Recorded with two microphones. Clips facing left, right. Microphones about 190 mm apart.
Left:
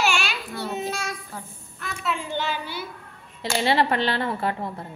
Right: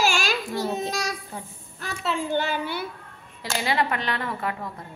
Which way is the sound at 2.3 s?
55° right (ahead or behind).